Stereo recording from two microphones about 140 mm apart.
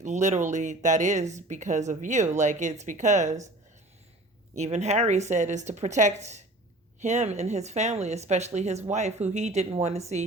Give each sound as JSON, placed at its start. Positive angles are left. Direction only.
{"t": 0.0, "sound": "speech", "side_deg": -55}
{"t": 4.5, "sound": "speech", "side_deg": -55}